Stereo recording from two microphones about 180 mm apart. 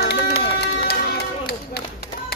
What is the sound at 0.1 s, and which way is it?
Run, 65° left (ahead or behind).